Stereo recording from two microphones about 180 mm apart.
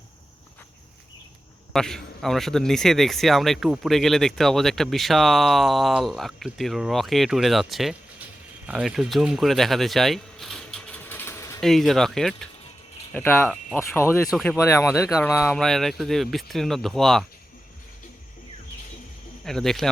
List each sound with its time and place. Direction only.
1.7 s a man's voice: 5° left (ahead or behind)
8.6 s a sound: 5° right (ahead or behind); by 11.6 s 15° left (ahead or behind)
11.6 s a man's voice: centre (ahead or behind)
19.5 s a man's voice: centre (ahead or behind)